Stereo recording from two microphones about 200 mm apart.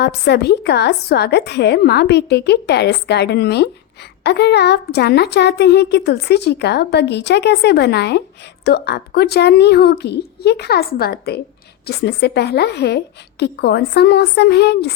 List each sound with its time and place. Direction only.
0.0 s a woman's voice: 55° left (ahead or behind)